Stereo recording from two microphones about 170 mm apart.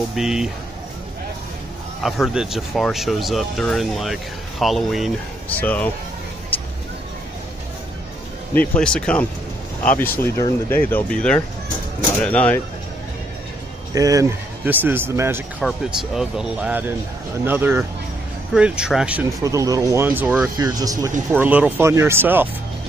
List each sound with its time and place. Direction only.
0.1 s speech: 5° right (ahead or behind)
2.0 s speech: centre (ahead or behind)
8.5 s speech: 5° left (ahead or behind)
13.9 s speech: 20° right (ahead or behind)
15.6 s speech: centre (ahead or behind)
19.2 s speech: 20° right (ahead or behind)
21.3 s speech: 10° right (ahead or behind)